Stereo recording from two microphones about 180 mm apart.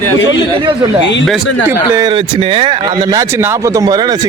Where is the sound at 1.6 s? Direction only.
15° right (ahead or behind).